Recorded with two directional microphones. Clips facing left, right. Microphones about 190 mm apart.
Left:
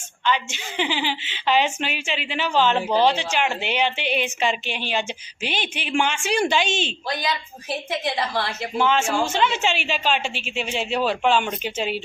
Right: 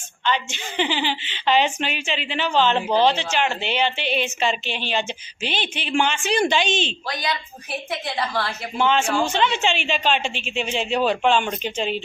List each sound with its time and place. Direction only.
0.3 s a woman's voice: 5° left (ahead or behind)
7.9 s a woman's voice: 20° left (ahead or behind)
8.8 s a woman's voice: 5° left (ahead or behind)